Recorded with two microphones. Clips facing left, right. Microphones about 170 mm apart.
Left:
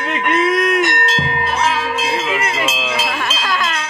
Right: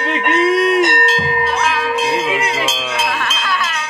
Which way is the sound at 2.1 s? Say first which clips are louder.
Right 2 dB; 20° right (ahead or behind).